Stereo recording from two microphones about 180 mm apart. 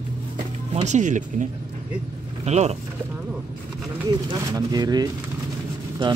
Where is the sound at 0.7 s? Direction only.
40° right (ahead or behind).